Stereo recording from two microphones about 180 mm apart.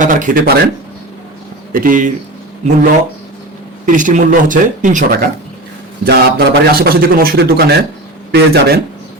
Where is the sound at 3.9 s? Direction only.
45° right (ahead or behind).